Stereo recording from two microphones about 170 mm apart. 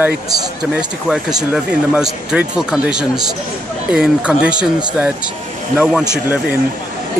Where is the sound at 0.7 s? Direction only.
5° right (ahead or behind).